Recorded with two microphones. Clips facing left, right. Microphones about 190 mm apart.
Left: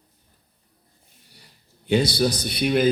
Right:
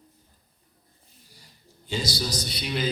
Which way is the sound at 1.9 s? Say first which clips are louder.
Left 10 dB; 60° left (ahead or behind).